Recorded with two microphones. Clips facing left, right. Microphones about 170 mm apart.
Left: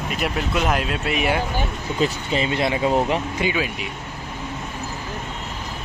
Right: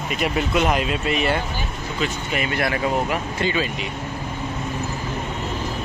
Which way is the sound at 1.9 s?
30° left (ahead or behind).